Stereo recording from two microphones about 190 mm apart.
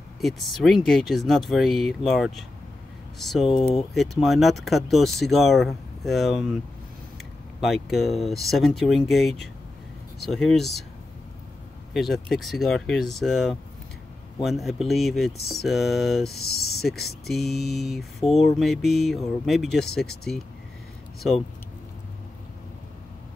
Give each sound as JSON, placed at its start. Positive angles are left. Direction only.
{"t": 0.2, "sound": "speech", "side_deg": 0}
{"t": 3.4, "sound": "speech", "side_deg": 25}
{"t": 3.9, "sound": "speech", "side_deg": 0}
{"t": 7.6, "sound": "speech", "side_deg": 0}
{"t": 11.9, "sound": "speech", "side_deg": 0}
{"t": 16.4, "sound": "speech", "side_deg": 55}
{"t": 17.3, "sound": "speech", "side_deg": 0}